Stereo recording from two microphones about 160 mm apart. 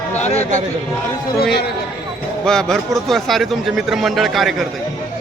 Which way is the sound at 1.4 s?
90° left.